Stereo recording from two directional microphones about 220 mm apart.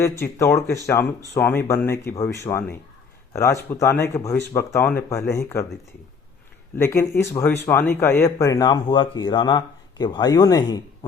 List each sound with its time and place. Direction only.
0.0 s speech: 10° left (ahead or behind)
6.7 s speech: 10° left (ahead or behind)